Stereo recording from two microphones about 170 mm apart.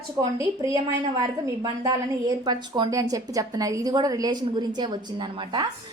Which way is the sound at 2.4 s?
25° right (ahead or behind).